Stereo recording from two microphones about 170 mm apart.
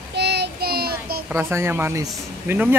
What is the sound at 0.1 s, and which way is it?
Child singing, 80° right.